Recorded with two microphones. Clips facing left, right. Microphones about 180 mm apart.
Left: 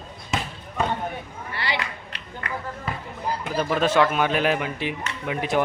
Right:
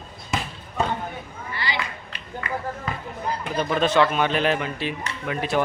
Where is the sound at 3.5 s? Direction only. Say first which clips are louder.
Even; 5° left (ahead or behind).